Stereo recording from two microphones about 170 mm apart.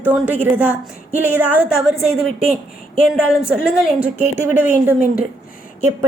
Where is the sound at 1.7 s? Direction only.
35° right (ahead or behind).